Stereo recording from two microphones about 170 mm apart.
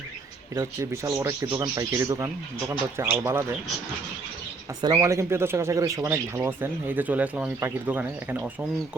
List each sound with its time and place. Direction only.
0.5 s speech: 15° right (ahead or behind)
4.8 s speech: 20° right (ahead or behind)